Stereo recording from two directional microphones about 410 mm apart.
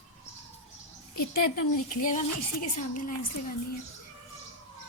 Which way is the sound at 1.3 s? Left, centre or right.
Left.